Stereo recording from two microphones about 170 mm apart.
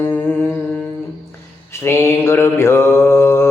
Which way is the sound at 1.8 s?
15° left (ahead or behind).